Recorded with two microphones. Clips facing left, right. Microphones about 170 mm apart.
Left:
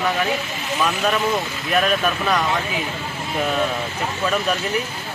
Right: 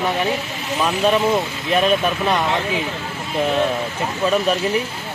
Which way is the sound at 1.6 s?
25° right (ahead or behind).